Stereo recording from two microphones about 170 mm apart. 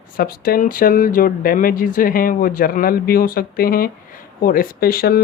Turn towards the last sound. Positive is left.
turn(degrees=60)  # may be behind; listen again after turning